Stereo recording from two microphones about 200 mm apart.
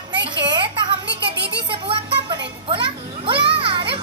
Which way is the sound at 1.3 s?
55° right (ahead or behind).